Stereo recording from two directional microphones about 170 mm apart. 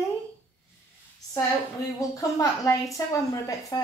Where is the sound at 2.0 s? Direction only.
20° left (ahead or behind).